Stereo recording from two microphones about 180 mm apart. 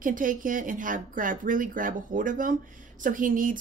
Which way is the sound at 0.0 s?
50° right (ahead or behind).